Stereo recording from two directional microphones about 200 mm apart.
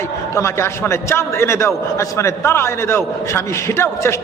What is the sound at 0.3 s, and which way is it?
A man's voice, 15° left (ahead or behind).